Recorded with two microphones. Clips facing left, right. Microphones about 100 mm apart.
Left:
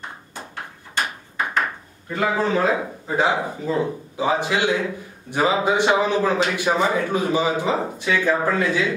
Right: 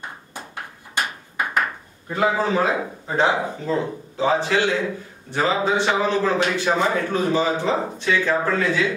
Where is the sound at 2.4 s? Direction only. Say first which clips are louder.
Left 1 dB; centre (ahead or behind).